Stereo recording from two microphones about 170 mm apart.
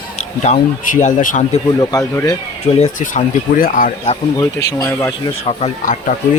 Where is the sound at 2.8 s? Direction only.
45° left (ahead or behind).